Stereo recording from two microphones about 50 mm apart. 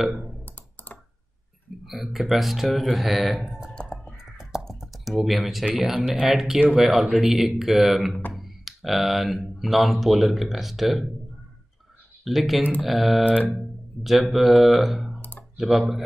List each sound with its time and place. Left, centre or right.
1.9 s speech: centre
3.4 s a sound: centre
3.7 s crow: centre
4.4 s crow: centre
4.7 s speech: centre
12.3 s speech: centre
13.2 s speech: left
14.0 s speech: centre